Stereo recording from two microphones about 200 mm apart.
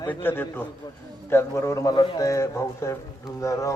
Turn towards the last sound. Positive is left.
turn(degrees=15)  # may be behind; listen again after turning